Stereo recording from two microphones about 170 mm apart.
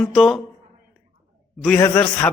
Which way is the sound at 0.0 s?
Centre (ahead or behind).